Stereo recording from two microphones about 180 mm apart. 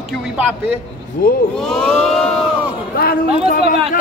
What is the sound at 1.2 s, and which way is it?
Speech, 55° left (ahead or behind).